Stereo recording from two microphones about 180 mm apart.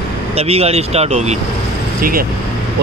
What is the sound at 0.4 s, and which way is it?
Speech, 35° right (ahead or behind).